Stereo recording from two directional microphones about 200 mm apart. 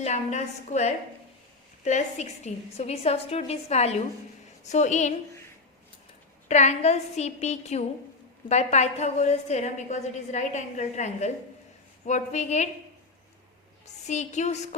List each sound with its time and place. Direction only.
0.0 s a woman's voice: 35° left (ahead or behind)
6.5 s a woman's voice: 35° left (ahead or behind)
13.8 s a woman's voice: 35° left (ahead or behind)